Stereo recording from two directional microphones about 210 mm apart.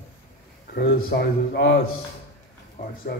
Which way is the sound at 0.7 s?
50° left (ahead or behind).